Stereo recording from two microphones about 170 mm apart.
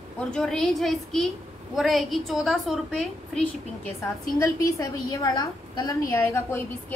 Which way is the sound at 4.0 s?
15° left (ahead or behind).